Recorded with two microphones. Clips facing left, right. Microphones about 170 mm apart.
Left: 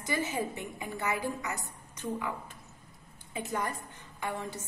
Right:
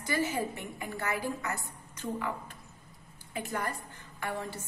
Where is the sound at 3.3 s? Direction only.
20° left (ahead or behind).